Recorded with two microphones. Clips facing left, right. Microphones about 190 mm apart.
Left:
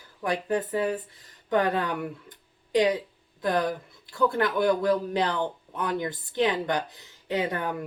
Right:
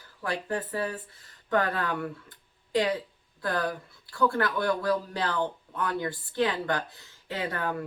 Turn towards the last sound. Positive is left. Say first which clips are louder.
# left 4 dB
turn(degrees=20)  # may be behind; listen again after turning